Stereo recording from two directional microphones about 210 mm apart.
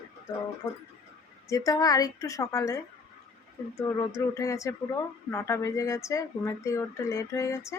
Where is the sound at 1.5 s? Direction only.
15° left (ahead or behind).